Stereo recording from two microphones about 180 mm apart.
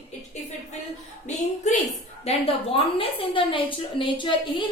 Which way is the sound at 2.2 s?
35° left (ahead or behind).